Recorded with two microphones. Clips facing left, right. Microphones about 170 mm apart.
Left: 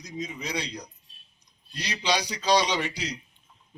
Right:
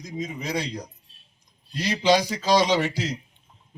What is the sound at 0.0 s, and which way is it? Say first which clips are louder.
A man's voice: right 3 dB; 50° right (ahead or behind).